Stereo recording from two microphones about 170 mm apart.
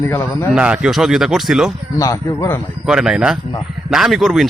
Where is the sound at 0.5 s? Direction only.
5° right (ahead or behind).